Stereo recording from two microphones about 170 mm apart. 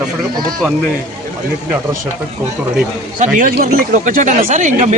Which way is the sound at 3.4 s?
55° right (ahead or behind).